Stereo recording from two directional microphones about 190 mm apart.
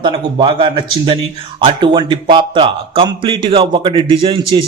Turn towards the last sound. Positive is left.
turn(degrees=-25)  # may be behind; listen again after turning